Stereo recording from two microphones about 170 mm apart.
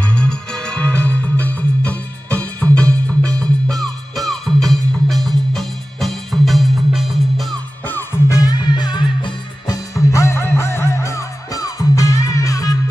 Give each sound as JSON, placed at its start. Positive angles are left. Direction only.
{"t": 0.0, "sound": "music", "side_deg": 5}
{"t": 7.8, "sound": "music", "side_deg": 10}
{"t": 8.4, "sound": "music", "side_deg": 25}